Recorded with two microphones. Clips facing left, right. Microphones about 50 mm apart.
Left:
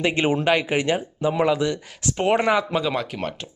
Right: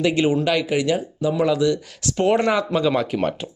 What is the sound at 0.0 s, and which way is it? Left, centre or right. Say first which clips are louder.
Speech: right 2 dB; left.